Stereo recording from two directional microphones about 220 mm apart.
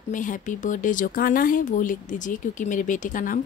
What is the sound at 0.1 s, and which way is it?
Speech, 35° left (ahead or behind).